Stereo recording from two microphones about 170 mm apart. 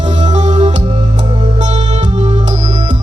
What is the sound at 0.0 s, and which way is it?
Music, 45° right (ahead or behind).